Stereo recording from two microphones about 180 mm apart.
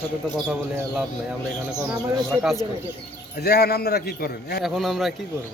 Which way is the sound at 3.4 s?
60° left (ahead or behind).